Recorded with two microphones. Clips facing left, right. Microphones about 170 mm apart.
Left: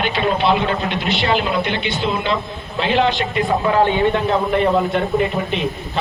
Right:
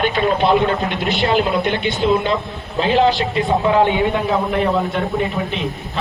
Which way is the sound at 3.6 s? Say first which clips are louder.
Right 1 dB; 20° right (ahead or behind).